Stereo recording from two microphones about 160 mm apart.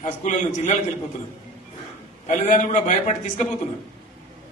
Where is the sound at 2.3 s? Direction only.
50° left (ahead or behind).